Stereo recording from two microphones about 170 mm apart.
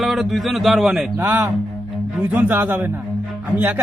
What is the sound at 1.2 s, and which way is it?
A man's voice, 15° right (ahead or behind).